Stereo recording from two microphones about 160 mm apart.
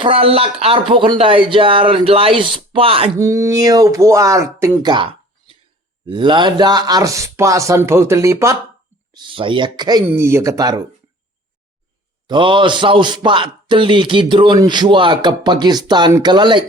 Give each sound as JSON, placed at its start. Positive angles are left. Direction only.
{"t": 0.0, "sound": "speech", "side_deg": -35}
{"t": 3.2, "sound": "a man's voice", "side_deg": -20}
{"t": 4.6, "sound": "a sound", "side_deg": -20}
{"t": 6.1, "sound": "a man's voice", "side_deg": -30}
{"t": 9.1, "sound": "a man's voice", "side_deg": -30}
{"t": 12.3, "sound": "a man's voice", "side_deg": -30}